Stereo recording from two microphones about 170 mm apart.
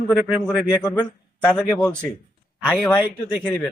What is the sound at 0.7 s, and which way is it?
Speech, 20° left (ahead or behind).